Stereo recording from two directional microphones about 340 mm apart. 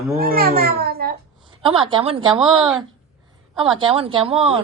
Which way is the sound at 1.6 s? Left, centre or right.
Centre.